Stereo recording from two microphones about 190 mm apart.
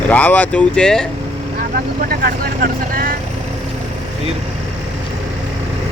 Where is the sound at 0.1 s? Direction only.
10° left (ahead or behind).